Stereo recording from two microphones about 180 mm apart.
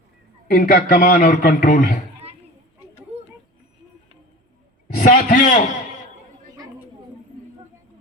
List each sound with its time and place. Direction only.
0.5 s a man's voice: 50° left (ahead or behind)
4.9 s a man's voice: 50° left (ahead or behind)